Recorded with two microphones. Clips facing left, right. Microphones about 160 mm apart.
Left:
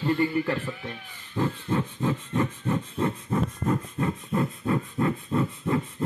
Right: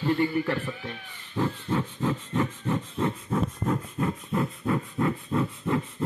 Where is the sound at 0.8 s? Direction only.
Centre (ahead or behind).